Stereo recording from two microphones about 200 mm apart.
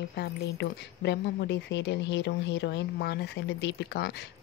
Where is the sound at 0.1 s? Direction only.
55° left (ahead or behind).